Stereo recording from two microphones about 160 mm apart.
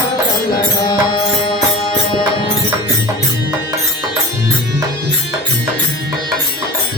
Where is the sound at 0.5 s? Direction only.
30° left (ahead or behind).